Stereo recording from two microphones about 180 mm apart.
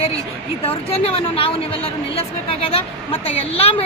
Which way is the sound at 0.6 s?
30° left (ahead or behind).